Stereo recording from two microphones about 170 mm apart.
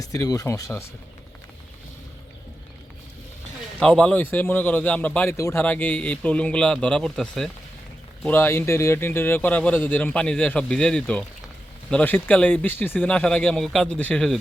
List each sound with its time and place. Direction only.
0.0 s speech: 20° left (ahead or behind)
3.8 s speech: 5° left (ahead or behind)
8.3 s speech: 15° left (ahead or behind)